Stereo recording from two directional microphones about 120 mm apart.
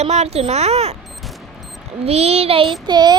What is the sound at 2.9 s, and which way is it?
Speech, 35° right (ahead or behind).